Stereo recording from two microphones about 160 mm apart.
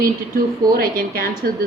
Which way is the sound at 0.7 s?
65° right (ahead or behind).